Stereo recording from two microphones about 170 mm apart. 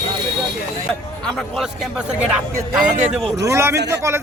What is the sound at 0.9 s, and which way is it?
A man's voice, 5° left (ahead or behind).